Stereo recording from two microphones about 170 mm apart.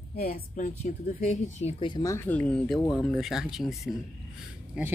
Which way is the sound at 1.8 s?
25° left (ahead or behind).